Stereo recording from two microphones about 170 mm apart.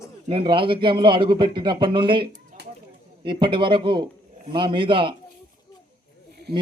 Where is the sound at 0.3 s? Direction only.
30° right (ahead or behind).